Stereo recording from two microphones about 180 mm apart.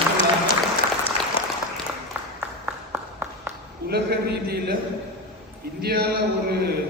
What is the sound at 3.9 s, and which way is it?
Speech, 60° right (ahead or behind).